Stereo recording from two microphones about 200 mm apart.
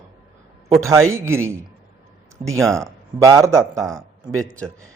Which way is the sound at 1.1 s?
15° right (ahead or behind).